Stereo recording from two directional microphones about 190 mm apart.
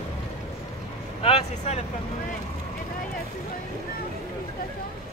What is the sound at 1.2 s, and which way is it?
Vehicle, 35° left (ahead or behind).